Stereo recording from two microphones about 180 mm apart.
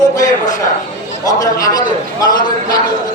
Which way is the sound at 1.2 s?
20° left (ahead or behind).